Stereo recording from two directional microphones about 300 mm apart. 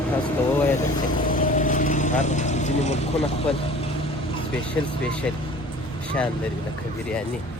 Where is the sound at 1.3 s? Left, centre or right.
Left.